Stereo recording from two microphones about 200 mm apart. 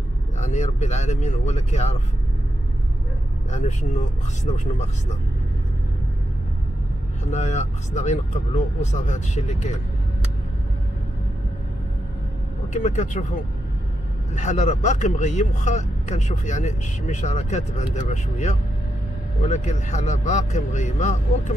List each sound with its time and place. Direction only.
0.4 s speech: 35° left (ahead or behind)
3.5 s speech: 35° left (ahead or behind)
7.2 s speech: 35° left (ahead or behind)
12.7 s speech: 35° left (ahead or behind)
14.3 s speech: 35° left (ahead or behind)